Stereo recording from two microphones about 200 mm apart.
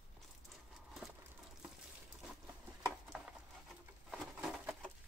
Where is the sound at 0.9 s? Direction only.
Centre (ahead or behind).